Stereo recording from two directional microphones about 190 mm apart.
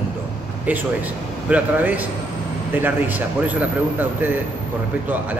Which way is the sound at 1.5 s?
10° right (ahead or behind).